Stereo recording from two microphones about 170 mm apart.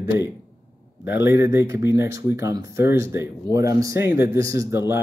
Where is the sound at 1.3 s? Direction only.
15° right (ahead or behind).